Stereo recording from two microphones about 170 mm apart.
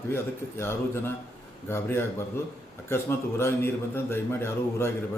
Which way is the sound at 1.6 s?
15° left (ahead or behind).